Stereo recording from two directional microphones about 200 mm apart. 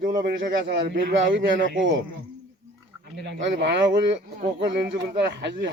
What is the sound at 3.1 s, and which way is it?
A man's voice, 60° right (ahead or behind).